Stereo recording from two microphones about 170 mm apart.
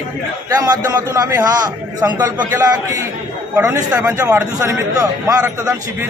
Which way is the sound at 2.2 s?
10° right (ahead or behind).